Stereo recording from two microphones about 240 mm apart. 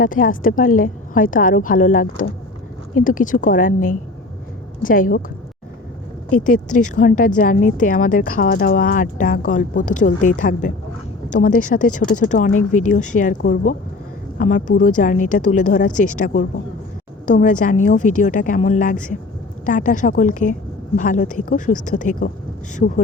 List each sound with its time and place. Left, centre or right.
0.0 s a woman's voice: left
6.3 s a woman's voice: left